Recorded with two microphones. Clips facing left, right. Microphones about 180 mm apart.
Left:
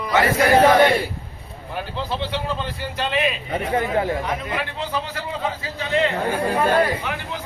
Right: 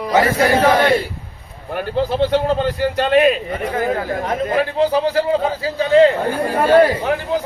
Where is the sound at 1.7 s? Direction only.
55° right (ahead or behind).